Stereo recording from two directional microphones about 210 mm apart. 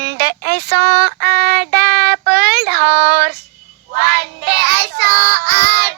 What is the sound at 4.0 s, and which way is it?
Child singing, 50° right (ahead or behind).